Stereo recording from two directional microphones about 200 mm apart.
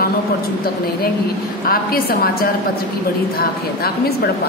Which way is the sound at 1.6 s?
50° left (ahead or behind).